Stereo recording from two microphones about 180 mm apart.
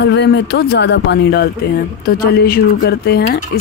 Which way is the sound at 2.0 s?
55° left (ahead or behind).